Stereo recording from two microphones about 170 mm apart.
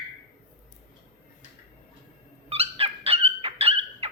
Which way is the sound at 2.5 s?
35° right (ahead or behind).